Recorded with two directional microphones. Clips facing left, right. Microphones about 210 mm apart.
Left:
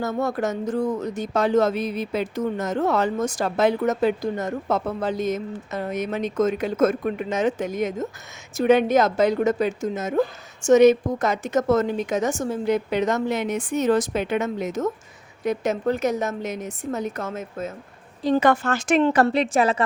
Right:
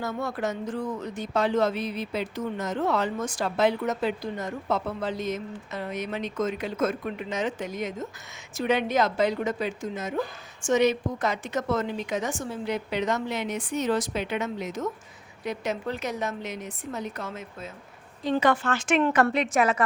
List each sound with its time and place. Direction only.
0.0 s a woman's voice: 45° left (ahead or behind)